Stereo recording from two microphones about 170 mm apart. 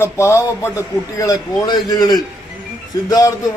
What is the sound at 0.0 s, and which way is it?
A man's voice, 15° left (ahead or behind).